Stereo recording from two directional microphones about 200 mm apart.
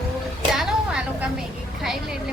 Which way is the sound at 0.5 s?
5° right (ahead or behind).